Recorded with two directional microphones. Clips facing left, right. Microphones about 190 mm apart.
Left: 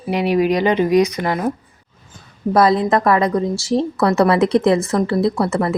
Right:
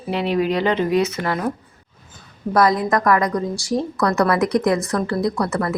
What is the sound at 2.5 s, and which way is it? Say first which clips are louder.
A woman's voice: left 3 dB; 25° left (ahead or behind).